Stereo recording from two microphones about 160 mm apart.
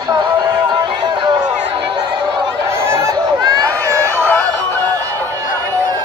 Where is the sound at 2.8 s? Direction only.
15° right (ahead or behind).